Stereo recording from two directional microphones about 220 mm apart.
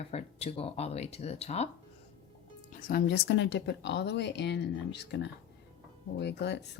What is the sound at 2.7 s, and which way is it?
Speech, 40° left (ahead or behind).